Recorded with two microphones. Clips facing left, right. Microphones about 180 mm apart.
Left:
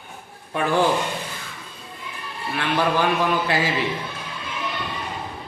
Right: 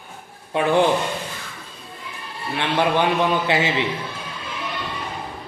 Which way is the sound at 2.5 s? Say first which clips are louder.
Right 2 dB; 20° right (ahead or behind).